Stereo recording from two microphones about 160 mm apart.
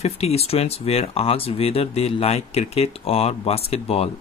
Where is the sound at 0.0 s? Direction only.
40° left (ahead or behind).